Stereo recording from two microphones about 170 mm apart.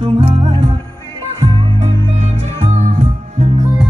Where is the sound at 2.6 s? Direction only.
40° right (ahead or behind).